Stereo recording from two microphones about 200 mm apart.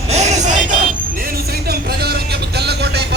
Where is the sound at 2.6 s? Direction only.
55° right (ahead or behind).